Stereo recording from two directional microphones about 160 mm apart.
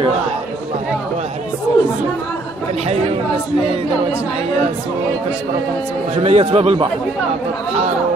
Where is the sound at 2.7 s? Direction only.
40° right (ahead or behind).